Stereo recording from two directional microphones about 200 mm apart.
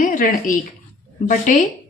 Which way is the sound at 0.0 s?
45° left (ahead or behind).